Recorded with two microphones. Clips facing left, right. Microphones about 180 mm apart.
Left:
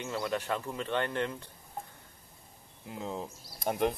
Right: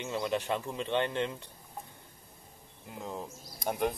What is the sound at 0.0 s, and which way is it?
Speech, 20° right (ahead or behind).